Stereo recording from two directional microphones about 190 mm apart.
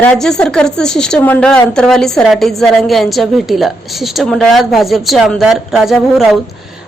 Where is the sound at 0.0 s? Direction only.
5° left (ahead or behind).